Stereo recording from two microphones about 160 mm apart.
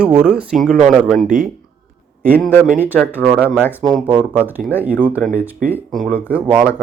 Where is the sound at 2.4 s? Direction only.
10° left (ahead or behind).